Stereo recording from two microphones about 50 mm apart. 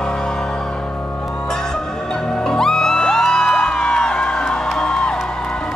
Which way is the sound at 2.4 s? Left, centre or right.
Centre.